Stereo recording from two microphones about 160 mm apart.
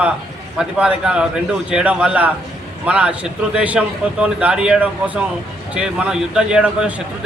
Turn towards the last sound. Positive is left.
turn(degrees=-5)  # may be behind; listen again after turning